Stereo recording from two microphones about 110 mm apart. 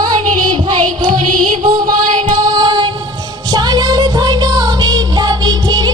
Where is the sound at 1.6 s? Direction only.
40° right (ahead or behind).